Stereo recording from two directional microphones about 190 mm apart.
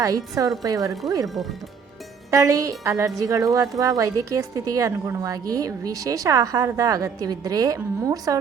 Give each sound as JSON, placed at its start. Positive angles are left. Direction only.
{"t": 0.0, "sound": "speech", "side_deg": -20}
{"t": 2.3, "sound": "a woman's voice", "side_deg": -15}